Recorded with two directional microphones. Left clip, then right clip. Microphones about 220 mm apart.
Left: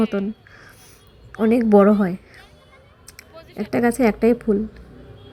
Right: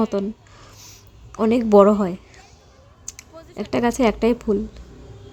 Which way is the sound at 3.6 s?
Centre (ahead or behind).